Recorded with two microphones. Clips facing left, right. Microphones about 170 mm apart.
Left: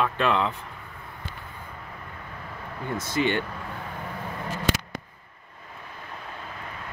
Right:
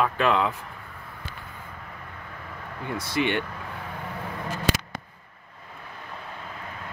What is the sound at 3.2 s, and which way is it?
Speech, 70° right (ahead or behind).